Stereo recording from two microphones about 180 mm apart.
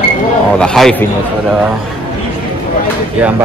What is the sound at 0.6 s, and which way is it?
Speech, 5° left (ahead or behind).